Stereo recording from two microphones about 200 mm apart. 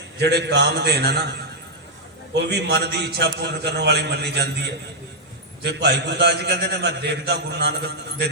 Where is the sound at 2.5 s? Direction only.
55° right (ahead or behind).